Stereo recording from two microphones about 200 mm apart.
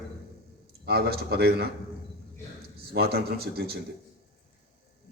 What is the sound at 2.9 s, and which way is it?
Speech, 50° right (ahead or behind).